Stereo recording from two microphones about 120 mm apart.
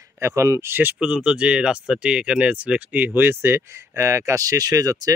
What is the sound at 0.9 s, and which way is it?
Speech, 5° right (ahead or behind).